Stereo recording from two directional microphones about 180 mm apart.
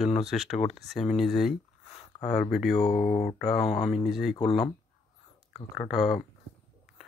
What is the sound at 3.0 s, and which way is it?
Speech, 40° left (ahead or behind).